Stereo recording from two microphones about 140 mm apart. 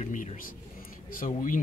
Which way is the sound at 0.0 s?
60° left (ahead or behind).